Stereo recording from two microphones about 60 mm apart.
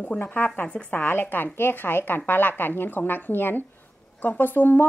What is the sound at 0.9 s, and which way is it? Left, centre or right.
A woman's voice, left.